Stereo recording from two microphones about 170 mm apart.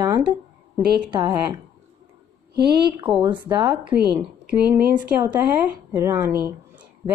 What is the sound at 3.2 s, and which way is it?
Speech, 25° right (ahead or behind).